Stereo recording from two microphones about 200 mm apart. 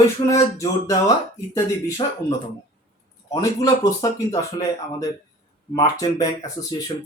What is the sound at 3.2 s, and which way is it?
Speech, 15° left (ahead or behind).